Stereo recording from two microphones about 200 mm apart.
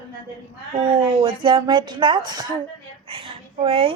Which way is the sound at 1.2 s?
25° right (ahead or behind).